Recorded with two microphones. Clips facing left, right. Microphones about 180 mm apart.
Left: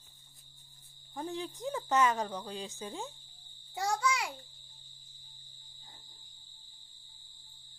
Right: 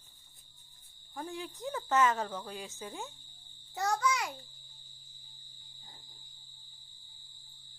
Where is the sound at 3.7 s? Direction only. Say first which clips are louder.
Right 1 dB; 10° left (ahead or behind).